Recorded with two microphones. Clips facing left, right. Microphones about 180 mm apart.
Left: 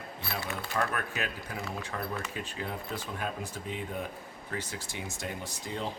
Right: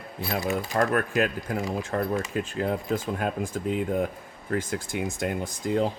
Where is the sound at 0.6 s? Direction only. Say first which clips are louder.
Right 6 dB; 40° right (ahead or behind).